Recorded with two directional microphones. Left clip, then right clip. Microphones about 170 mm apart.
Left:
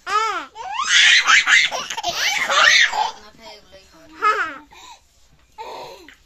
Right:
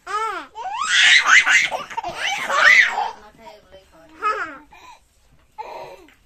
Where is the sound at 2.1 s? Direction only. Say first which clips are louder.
Left 3 dB; 10° left (ahead or behind).